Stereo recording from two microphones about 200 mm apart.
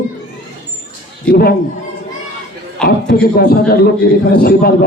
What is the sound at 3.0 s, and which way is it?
A man's voice, 55° left (ahead or behind).